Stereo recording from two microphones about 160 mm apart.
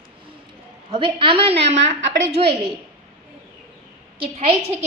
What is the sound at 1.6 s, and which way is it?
Speech, 90° right.